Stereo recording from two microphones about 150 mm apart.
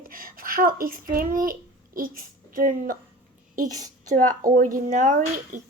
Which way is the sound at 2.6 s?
65° right (ahead or behind).